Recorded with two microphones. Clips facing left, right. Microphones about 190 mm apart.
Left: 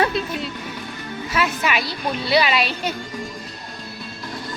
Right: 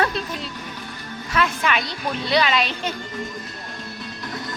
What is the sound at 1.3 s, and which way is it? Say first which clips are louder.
A woman's voice: even; 5° left (ahead or behind).